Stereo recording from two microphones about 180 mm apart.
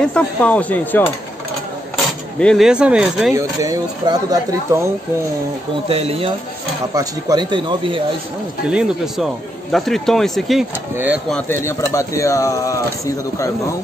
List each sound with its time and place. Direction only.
0.0 s speech: 5° left (ahead or behind)
2.4 s speech: centre (ahead or behind)
3.3 s speech: 20° right (ahead or behind)
5.9 s speech: 35° right (ahead or behind)
7.0 s speech: 20° right (ahead or behind)
8.6 s speech: 5° right (ahead or behind); by 13.7 s 15° left (ahead or behind)